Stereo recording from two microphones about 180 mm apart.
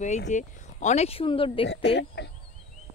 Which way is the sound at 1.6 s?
75° left (ahead or behind).